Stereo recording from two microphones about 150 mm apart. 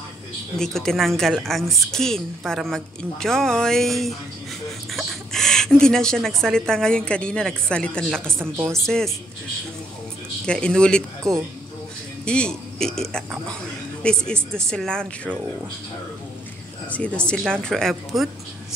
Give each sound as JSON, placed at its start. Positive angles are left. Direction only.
{"t": 0.6, "sound": "a woman's voice", "side_deg": 5}
{"t": 8.4, "sound": "speech", "side_deg": -15}
{"t": 8.8, "sound": "a woman's voice", "side_deg": 5}
{"t": 10.4, "sound": "speech", "side_deg": 5}
{"t": 12.3, "sound": "a woman's voice", "side_deg": 5}
{"t": 16.9, "sound": "a woman's voice", "side_deg": 10}